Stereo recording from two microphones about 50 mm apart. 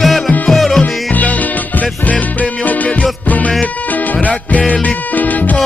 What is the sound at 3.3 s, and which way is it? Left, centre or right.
Music, left.